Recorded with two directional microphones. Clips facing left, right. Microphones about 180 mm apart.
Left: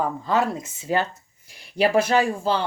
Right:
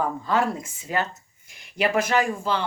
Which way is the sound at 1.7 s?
30° left (ahead or behind).